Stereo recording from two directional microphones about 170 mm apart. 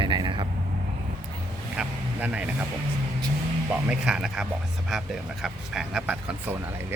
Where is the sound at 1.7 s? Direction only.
10° right (ahead or behind).